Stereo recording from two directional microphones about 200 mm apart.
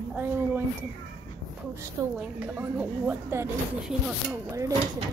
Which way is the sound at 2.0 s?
20° right (ahead or behind).